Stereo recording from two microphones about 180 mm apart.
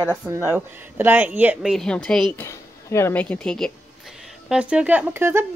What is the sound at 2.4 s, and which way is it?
A woman's voice, 15° left (ahead or behind).